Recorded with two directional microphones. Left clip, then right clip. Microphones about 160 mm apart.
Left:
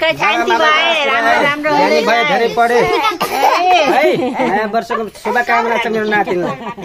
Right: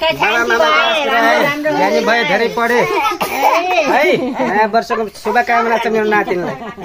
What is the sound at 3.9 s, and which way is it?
Speech, 25° left (ahead or behind).